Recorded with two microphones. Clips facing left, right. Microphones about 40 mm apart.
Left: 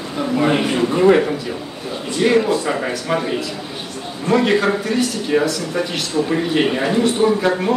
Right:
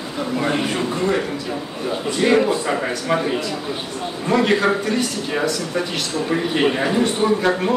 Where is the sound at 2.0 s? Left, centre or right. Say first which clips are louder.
Left 1 dB; centre.